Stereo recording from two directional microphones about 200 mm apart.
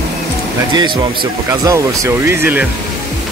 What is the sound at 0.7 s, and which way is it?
Speech, 20° right (ahead or behind).